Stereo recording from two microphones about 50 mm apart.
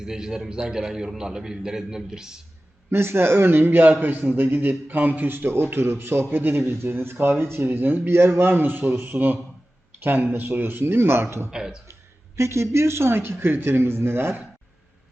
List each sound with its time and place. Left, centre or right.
0.0 s a man's voice: centre
2.9 s speech: right
11.5 s a man's voice: centre
12.4 s speech: right